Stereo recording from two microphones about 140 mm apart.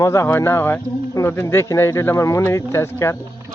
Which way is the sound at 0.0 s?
20° left (ahead or behind).